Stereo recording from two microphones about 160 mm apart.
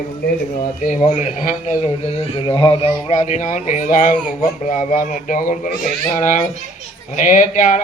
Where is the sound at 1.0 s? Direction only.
45° left (ahead or behind).